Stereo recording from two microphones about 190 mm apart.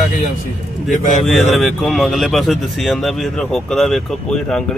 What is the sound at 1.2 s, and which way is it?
Speech, centre (ahead or behind).